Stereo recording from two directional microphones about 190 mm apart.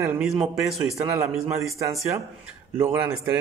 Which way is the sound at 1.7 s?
15° right (ahead or behind).